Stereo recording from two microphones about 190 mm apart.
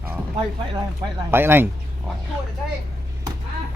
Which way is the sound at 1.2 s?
10° right (ahead or behind).